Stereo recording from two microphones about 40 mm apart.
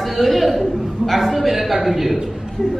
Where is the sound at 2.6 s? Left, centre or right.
Left.